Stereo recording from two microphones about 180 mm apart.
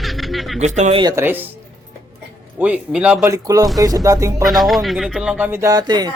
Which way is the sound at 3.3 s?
20° right (ahead or behind).